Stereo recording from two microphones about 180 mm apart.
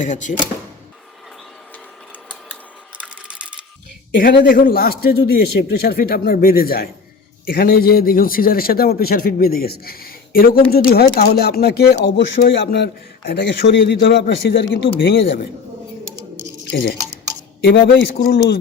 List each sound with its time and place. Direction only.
0.0 s speech: 45° left (ahead or behind)
3.0 s a sound: 5° right (ahead or behind)
4.4 s a man's voice: 50° left (ahead or behind); by 15.3 s 90° left
16.6 s a man's voice: 65° left (ahead or behind)